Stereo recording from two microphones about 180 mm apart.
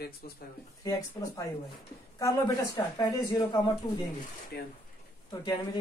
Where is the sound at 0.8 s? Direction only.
20° left (ahead or behind).